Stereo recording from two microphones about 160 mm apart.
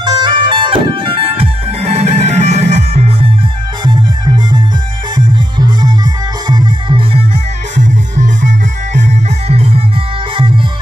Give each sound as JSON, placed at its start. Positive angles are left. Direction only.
{"t": 0.0, "sound": "music", "side_deg": -30}
{"t": 3.8, "sound": "music", "side_deg": -25}
{"t": 7.7, "sound": "music", "side_deg": -50}